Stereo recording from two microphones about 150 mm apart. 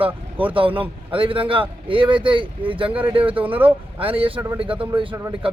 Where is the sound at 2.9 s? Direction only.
10° right (ahead or behind).